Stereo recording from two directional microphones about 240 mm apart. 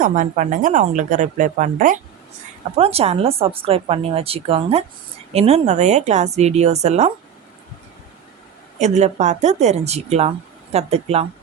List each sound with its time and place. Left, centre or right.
0.0 s a woman's voice: right
8.8 s speech: right